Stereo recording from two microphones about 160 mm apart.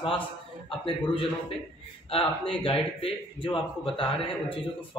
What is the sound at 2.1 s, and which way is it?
A man's voice, 35° left (ahead or behind).